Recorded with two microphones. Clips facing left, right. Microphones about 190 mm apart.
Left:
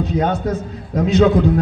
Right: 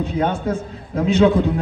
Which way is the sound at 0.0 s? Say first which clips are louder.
Left 2 dB; 40° left (ahead or behind).